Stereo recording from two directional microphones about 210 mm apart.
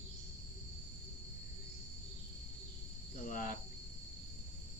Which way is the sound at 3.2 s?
40° left (ahead or behind).